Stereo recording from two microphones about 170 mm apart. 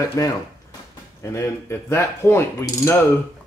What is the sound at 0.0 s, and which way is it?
Speech, 20° left (ahead or behind).